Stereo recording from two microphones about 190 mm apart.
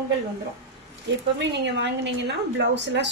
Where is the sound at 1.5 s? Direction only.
65° right (ahead or behind).